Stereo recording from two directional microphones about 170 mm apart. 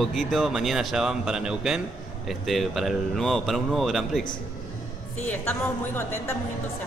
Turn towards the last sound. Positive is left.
turn(degrees=15)  # may be behind; listen again after turning